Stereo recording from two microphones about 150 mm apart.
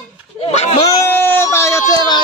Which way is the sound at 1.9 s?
30° left (ahead or behind).